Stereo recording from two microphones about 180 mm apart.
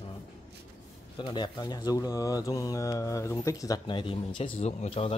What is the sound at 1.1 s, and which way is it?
Speech, 25° left (ahead or behind).